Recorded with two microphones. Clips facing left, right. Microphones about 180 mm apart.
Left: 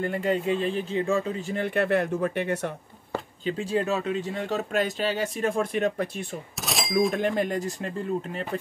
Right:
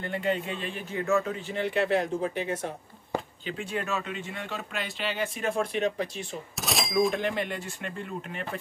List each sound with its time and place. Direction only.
0.0 s speech: 40° left (ahead or behind)
1.4 s speech: 50° left (ahead or behind); by 2.7 s 65° left (ahead or behind)
3.4 s speech: 35° left (ahead or behind); by 6.2 s 50° left (ahead or behind)
6.5 s cash register: centre (ahead or behind)
7.2 s speech: 45° left (ahead or behind)